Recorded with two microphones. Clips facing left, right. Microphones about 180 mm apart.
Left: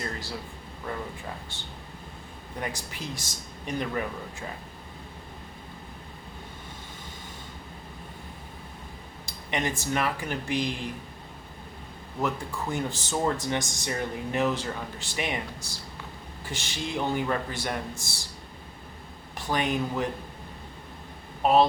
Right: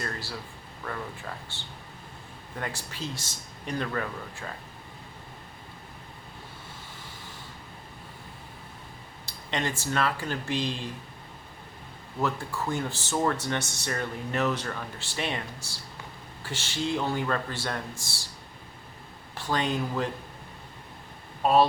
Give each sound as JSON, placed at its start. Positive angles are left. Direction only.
{"t": 0.0, "sound": "a sound", "side_deg": 20}
{"t": 2.6, "sound": "speech", "side_deg": 15}
{"t": 9.2, "sound": "speech", "side_deg": 15}
{"t": 12.2, "sound": "speech", "side_deg": 15}
{"t": 19.3, "sound": "speech", "side_deg": 15}
{"t": 21.4, "sound": "speech", "side_deg": 20}